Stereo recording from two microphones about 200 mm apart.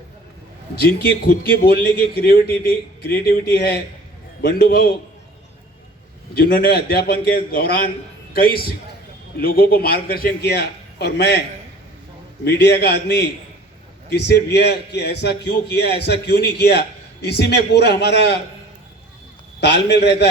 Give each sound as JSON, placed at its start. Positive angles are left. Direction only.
{"t": 0.8, "sound": "a man's voice", "side_deg": 50}
{"t": 6.3, "sound": "a man's voice", "side_deg": 50}
{"t": 12.5, "sound": "a man's voice", "side_deg": 55}
{"t": 19.5, "sound": "a man's voice", "side_deg": 55}